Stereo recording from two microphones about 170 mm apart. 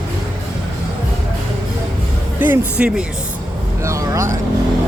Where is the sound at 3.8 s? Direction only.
15° right (ahead or behind).